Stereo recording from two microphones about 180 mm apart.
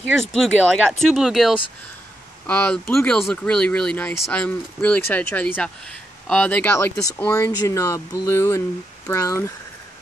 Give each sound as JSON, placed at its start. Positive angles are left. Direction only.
{"t": 0.3, "sound": "speech", "side_deg": 5}